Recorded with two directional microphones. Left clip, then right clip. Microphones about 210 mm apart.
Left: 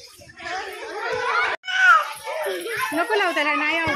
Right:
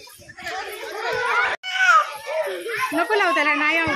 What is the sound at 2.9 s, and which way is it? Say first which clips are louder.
Speech: right 2 dB; 10° right (ahead or behind).